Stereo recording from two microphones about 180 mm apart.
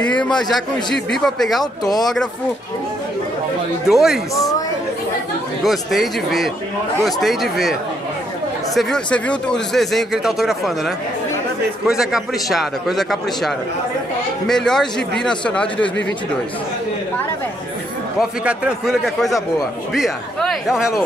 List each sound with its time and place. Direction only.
0.4 s speech: centre (ahead or behind)
1.6 s speech: 20° left (ahead or behind)
3.8 s speech: centre (ahead or behind)
4.4 s chatter: 20° left (ahead or behind)
5.6 s speech: centre (ahead or behind)
8.7 s speech: 5° left (ahead or behind)
11.9 s speech: centre (ahead or behind)
14.5 s speech: 5° left (ahead or behind)
18.4 s speech: 5° right (ahead or behind)